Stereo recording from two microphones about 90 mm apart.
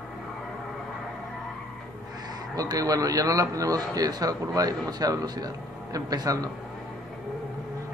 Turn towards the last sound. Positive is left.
turn(degrees=-45)  # may be behind; listen again after turning